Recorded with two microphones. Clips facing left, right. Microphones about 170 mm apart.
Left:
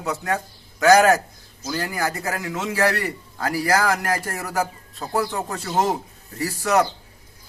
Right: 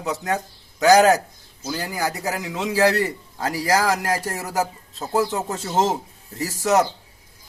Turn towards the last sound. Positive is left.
turn(degrees=-20)  # may be behind; listen again after turning